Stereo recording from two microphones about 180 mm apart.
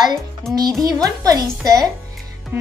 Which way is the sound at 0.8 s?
20° right (ahead or behind).